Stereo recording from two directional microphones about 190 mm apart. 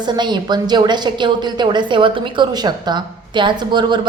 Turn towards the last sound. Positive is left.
turn(degrees=-25)  # may be behind; listen again after turning